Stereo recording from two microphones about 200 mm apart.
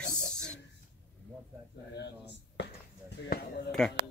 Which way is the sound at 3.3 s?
50° left (ahead or behind).